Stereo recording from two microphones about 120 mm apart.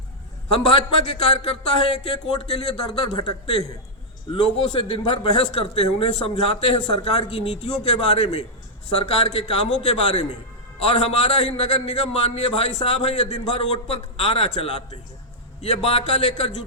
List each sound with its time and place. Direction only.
0.5 s a man's voice: 55° left (ahead or behind)